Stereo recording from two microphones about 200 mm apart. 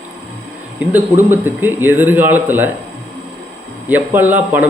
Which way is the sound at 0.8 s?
10° right (ahead or behind).